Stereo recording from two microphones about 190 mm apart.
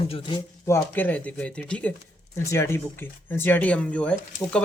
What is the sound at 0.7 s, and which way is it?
Speech, 10° left (ahead or behind).